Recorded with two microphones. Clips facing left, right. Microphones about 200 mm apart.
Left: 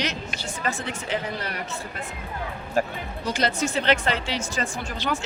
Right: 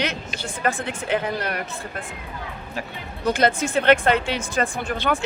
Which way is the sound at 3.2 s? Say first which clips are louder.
Right 5 dB; 55° right (ahead or behind).